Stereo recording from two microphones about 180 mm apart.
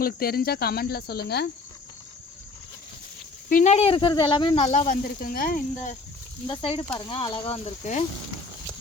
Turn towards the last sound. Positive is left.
turn(degrees=40)  # may be behind; listen again after turning